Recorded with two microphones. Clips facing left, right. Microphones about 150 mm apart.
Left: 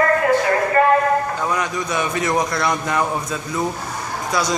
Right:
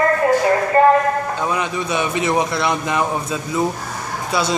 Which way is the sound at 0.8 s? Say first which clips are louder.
Right 4 dB; 30° right (ahead or behind).